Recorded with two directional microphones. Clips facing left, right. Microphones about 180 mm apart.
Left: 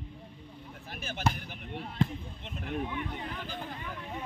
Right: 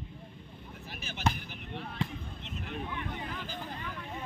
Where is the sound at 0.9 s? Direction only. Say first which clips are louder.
Left 5 dB; 50° left (ahead or behind).